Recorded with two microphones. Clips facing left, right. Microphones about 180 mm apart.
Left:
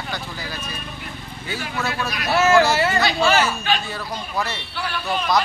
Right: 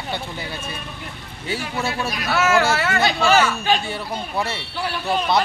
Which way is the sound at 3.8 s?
25° right (ahead or behind).